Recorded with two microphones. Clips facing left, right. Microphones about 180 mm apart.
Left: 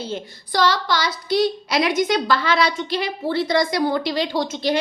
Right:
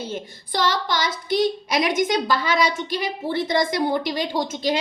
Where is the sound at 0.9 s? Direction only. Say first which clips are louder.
Left 1 dB; 45° right (ahead or behind).